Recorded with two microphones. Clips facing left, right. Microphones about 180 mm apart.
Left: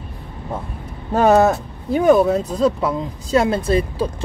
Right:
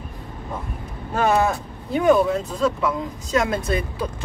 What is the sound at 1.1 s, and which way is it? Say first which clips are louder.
Speech: left 6 dB; 40° left (ahead or behind).